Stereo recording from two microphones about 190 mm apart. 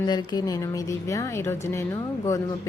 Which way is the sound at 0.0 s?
20° left (ahead or behind).